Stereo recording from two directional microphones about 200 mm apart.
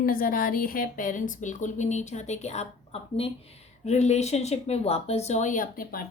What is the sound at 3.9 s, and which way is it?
A woman's voice, 35° left (ahead or behind).